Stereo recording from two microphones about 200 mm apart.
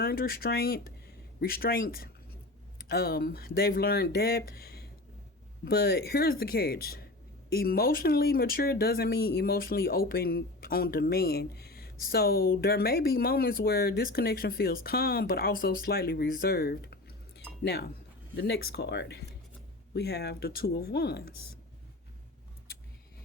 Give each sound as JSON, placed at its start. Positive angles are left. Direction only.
{"t": 0.0, "sound": "speech", "side_deg": 50}